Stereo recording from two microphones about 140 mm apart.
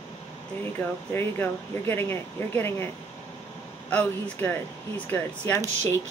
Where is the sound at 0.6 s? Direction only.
15° left (ahead or behind).